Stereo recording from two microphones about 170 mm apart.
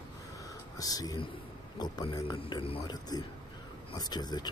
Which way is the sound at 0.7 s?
20° left (ahead or behind).